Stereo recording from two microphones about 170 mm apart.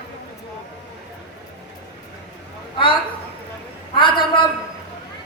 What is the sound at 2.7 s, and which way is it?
Speech, 30° left (ahead or behind).